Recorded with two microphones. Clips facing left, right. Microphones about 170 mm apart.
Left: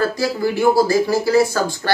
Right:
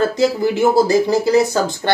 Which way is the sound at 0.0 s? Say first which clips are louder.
Right 3 dB; 20° right (ahead or behind).